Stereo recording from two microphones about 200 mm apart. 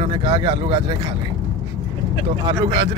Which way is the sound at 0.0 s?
25° right (ahead or behind).